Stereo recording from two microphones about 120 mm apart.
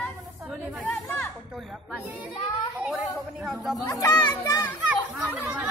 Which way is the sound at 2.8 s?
10° right (ahead or behind).